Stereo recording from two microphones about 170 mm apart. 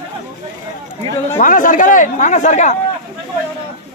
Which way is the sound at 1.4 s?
50° left (ahead or behind).